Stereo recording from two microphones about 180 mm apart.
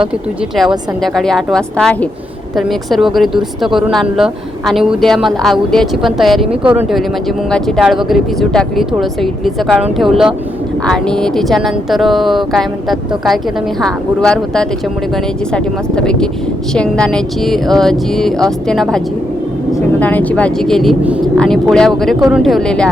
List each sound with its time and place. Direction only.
0.5 s speech: centre (ahead or behind)